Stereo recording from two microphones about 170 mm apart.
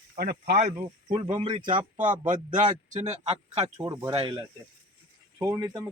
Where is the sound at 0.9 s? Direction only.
30° right (ahead or behind).